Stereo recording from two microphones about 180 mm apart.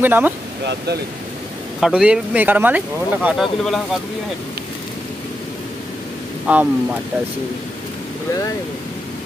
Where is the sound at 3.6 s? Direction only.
Centre (ahead or behind).